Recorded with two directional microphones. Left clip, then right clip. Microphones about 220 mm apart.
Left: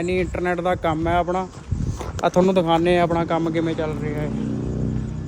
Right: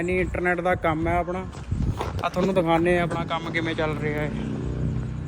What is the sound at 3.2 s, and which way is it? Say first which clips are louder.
Speech: left 7 dB; 40° left (ahead or behind).